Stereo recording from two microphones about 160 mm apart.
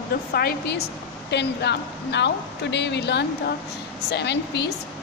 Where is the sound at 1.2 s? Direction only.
90° left.